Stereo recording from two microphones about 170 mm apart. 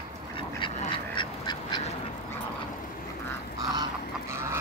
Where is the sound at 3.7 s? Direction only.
20° right (ahead or behind).